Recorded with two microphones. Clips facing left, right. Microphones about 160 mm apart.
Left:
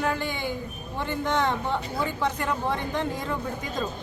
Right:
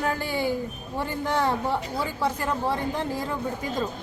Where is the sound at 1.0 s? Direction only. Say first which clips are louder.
Even; 10° right (ahead or behind).